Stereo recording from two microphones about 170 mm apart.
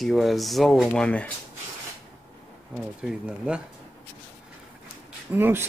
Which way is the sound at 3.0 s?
5° right (ahead or behind).